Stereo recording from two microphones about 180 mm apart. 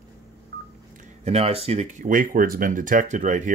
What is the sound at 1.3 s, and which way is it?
Speech, 35° right (ahead or behind).